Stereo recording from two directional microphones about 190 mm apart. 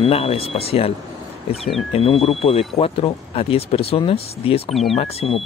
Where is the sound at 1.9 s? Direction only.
30° left (ahead or behind).